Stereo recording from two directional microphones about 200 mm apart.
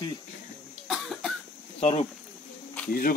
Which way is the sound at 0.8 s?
Centre (ahead or behind).